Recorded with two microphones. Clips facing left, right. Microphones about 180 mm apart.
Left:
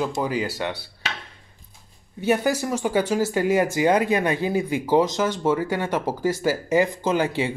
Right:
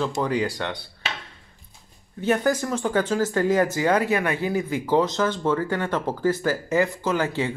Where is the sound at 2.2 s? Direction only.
10° left (ahead or behind).